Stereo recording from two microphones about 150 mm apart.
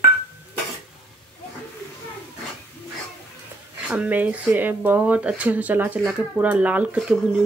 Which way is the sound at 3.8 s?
10° right (ahead or behind).